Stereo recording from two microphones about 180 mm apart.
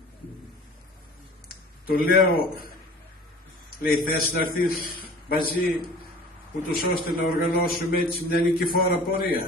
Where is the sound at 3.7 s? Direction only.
55° left (ahead or behind).